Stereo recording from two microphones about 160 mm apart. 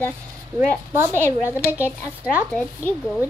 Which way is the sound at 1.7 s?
10° right (ahead or behind).